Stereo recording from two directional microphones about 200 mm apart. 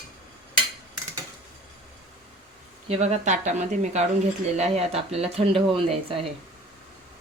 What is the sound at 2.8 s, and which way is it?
Speech, 30° right (ahead or behind).